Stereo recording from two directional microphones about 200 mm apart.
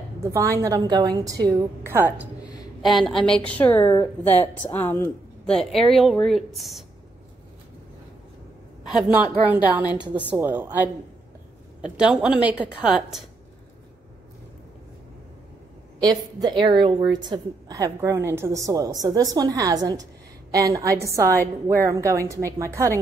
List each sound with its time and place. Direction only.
0.2 s a woman's voice: 15° right (ahead or behind)
8.8 s a woman's voice: centre (ahead or behind)
16.0 s a woman's voice: 20° right (ahead or behind)